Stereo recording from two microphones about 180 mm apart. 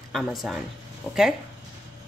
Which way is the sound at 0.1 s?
Centre (ahead or behind).